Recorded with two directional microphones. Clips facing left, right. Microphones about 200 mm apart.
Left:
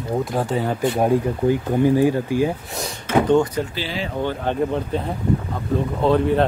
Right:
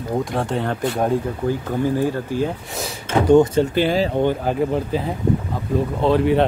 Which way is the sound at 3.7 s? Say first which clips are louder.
Right 10 dB; 55° right (ahead or behind).